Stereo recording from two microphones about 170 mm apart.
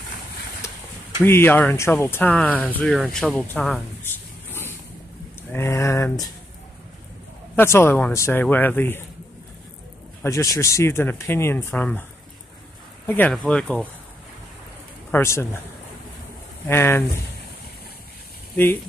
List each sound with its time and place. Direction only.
0.6 s a sound: 15° left (ahead or behind)
1.2 s speech: 15° left (ahead or behind)
7.5 s speech: 15° left (ahead or behind)
10.2 s speech: 20° left (ahead or behind)
13.0 s speech: 10° left (ahead or behind)
15.0 s speech: 15° left (ahead or behind)
16.6 s speech: 15° left (ahead or behind)